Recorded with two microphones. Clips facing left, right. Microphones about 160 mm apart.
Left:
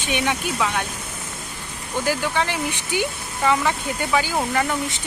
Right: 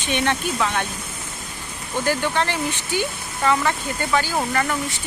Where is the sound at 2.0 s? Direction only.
10° left (ahead or behind).